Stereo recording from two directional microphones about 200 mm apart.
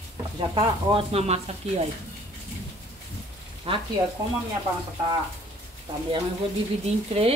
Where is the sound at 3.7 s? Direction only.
30° right (ahead or behind).